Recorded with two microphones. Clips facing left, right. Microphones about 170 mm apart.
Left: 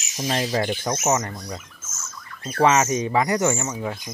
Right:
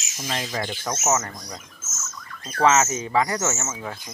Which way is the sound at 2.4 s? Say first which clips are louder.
Left 1 dB; 10° left (ahead or behind).